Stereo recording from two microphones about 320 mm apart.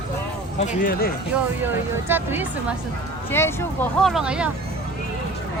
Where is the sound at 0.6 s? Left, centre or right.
Left.